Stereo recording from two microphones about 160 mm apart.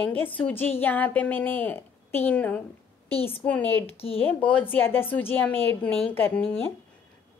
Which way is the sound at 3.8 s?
35° left (ahead or behind).